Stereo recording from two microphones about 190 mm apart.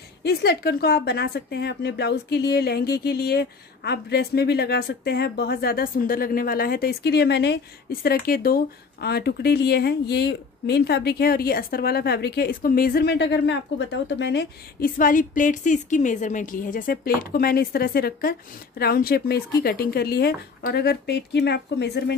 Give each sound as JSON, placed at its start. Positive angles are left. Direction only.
{"t": 0.2, "sound": "a woman's voice", "side_deg": 55}